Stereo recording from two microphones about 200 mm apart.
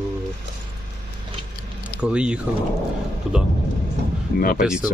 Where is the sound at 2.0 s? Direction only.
5° right (ahead or behind).